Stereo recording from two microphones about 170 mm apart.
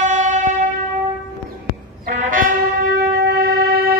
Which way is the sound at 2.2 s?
55° right (ahead or behind).